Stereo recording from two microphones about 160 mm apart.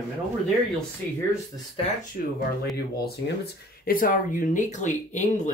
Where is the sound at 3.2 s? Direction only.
75° left (ahead or behind); by 5.4 s 50° left (ahead or behind).